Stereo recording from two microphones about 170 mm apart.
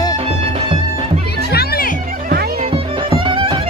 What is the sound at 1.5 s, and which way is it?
Music, 60° left (ahead or behind).